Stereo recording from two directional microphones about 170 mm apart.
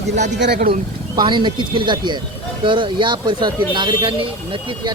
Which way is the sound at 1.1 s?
25° right (ahead or behind).